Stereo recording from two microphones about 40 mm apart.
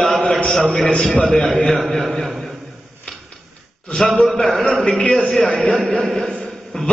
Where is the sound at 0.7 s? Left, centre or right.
Left.